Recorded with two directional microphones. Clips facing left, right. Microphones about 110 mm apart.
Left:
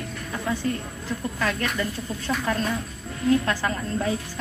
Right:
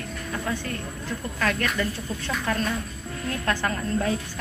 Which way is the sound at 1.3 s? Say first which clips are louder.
Right 2 dB; 15° left (ahead or behind).